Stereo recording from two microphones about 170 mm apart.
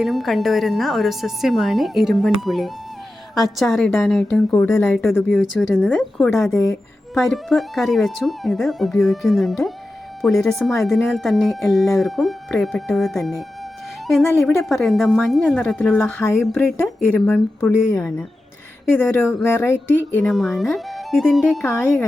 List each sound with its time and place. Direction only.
0.0 s a woman's voice: centre (ahead or behind)
18.9 s speech: 10° left (ahead or behind)
20.2 s a woman's voice: centre (ahead or behind)
21.6 s speech: 15° left (ahead or behind)